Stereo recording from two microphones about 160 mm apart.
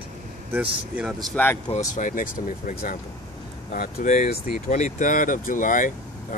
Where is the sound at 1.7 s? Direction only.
55° left (ahead or behind).